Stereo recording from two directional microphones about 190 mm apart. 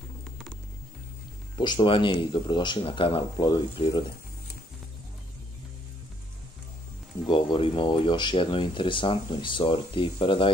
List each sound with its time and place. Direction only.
1.6 s speech: 25° left (ahead or behind)
7.2 s speech: 25° left (ahead or behind)